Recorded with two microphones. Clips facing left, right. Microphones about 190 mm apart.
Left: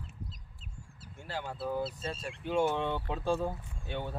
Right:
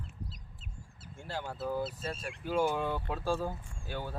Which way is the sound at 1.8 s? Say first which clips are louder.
Even; 25° left (ahead or behind).